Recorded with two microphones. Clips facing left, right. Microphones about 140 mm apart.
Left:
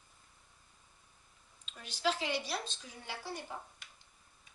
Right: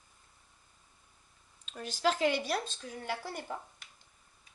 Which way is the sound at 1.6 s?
45° right (ahead or behind).